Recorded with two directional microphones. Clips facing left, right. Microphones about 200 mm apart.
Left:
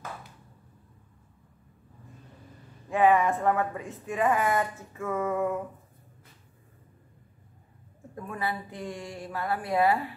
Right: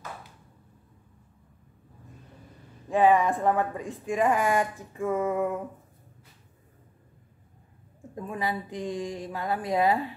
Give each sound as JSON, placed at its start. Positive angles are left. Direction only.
{"t": 3.0, "sound": "speech", "side_deg": -15}
{"t": 8.1, "sound": "speech", "side_deg": -15}